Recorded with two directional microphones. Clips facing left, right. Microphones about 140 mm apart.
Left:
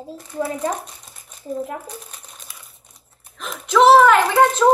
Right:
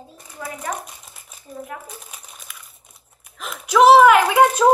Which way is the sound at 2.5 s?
30° left (ahead or behind).